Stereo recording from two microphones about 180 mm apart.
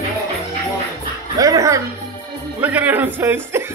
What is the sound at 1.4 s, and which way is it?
Music, 20° right (ahead or behind).